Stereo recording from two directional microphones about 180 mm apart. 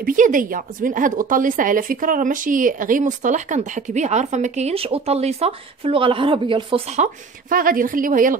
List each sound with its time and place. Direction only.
0.0 s a woman's voice: 50° right (ahead or behind); by 6.8 s 30° right (ahead or behind)
7.0 s a woman's voice: 50° right (ahead or behind)